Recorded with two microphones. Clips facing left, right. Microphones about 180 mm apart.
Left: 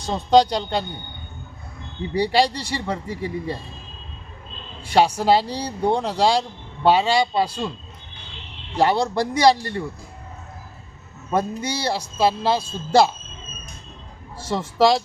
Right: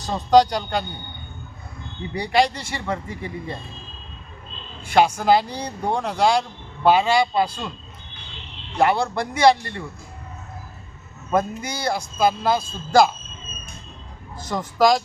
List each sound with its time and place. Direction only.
0.1 s a man's voice: 30° left (ahead or behind)
2.1 s a man's voice: 30° left (ahead or behind)
4.9 s a man's voice: 30° left (ahead or behind)
8.7 s a man's voice: 35° left (ahead or behind)
11.3 s a man's voice: 30° left (ahead or behind)
14.3 s a man's voice: 30° left (ahead or behind)